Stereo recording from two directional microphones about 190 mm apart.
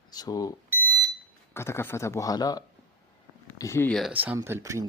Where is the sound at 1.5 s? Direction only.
15° left (ahead or behind).